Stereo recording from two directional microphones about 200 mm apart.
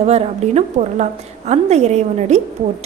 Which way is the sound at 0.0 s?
35° right (ahead or behind).